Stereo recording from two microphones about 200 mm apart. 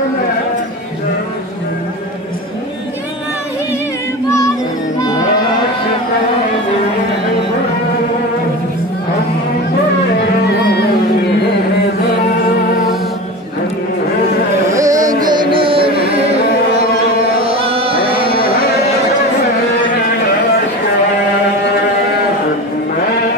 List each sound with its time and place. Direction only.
14.7 s carnatic music: 15° right (ahead or behind)
15.2 s music: 25° right (ahead or behind)
17.4 s chant: 30° right (ahead or behind)